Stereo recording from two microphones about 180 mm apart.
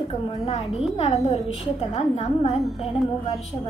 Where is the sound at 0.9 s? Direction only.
35° left (ahead or behind).